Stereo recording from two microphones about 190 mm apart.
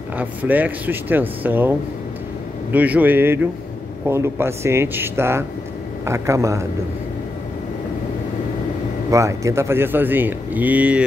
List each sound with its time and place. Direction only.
0.2 s speech: 10° right (ahead or behind)
2.7 s speech: 10° right (ahead or behind)
9.1 s speech: 15° right (ahead or behind)